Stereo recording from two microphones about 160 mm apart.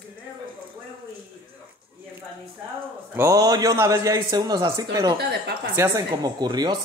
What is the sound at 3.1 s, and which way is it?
Speech, 20° right (ahead or behind).